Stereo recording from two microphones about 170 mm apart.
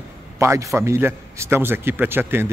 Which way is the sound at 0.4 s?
15° right (ahead or behind).